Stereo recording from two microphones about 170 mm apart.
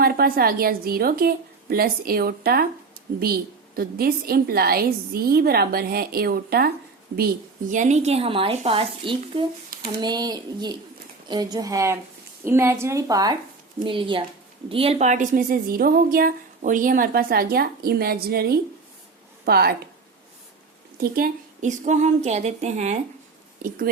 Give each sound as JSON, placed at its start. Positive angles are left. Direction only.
{"t": 0.0, "sound": "a woman's voice", "side_deg": -60}
{"t": 3.8, "sound": "a woman's voice", "side_deg": -65}
{"t": 7.7, "sound": "a woman's voice", "side_deg": -45}
{"t": 21.0, "sound": "a woman's voice", "side_deg": -55}